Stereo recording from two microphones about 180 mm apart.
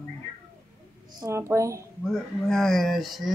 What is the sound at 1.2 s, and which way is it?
Speech, 15° right (ahead or behind).